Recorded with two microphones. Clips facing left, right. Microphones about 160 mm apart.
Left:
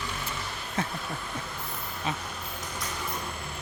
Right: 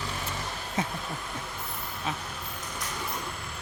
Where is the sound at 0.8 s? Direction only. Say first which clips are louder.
Right 1 dB; 20° right (ahead or behind).